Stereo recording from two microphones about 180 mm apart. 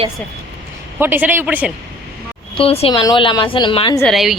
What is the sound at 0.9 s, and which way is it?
Speech, 10° right (ahead or behind).